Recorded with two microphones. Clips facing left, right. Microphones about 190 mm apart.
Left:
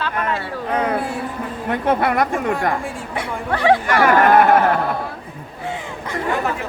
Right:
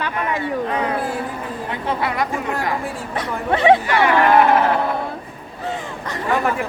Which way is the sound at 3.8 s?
50° left (ahead or behind).